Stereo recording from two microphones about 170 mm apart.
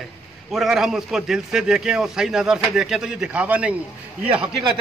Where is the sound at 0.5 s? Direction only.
Centre (ahead or behind).